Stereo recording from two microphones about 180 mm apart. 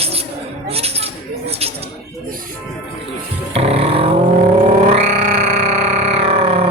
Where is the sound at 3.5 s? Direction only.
35° right (ahead or behind).